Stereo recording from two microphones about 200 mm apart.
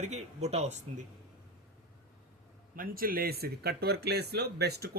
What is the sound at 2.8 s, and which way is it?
Speech, 45° right (ahead or behind).